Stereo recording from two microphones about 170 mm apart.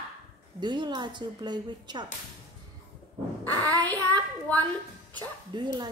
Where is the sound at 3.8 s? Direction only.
10° left (ahead or behind).